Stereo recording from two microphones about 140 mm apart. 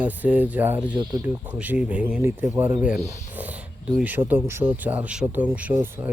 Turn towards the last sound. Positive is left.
turn(degrees=-15)  # may be behind; listen again after turning